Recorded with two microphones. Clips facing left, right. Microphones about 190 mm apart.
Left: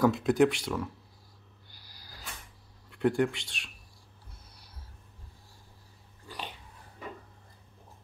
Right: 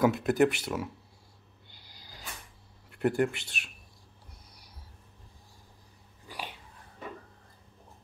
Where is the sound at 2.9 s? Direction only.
5° right (ahead or behind).